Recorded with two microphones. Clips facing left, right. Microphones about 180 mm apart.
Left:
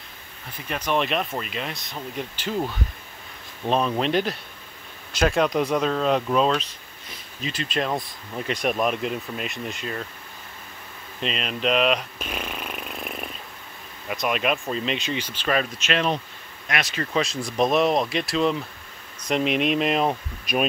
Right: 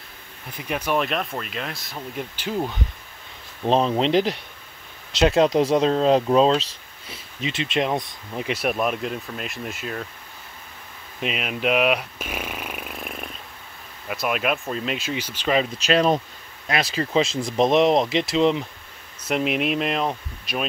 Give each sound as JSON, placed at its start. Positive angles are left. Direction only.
{"t": 0.7, "sound": "speech", "side_deg": -10}
{"t": 3.6, "sound": "speech", "side_deg": -30}
{"t": 7.7, "sound": "speech", "side_deg": -20}
{"t": 11.1, "sound": "speech", "side_deg": -10}
{"t": 15.8, "sound": "speech", "side_deg": -35}
{"t": 19.2, "sound": "speech", "side_deg": -5}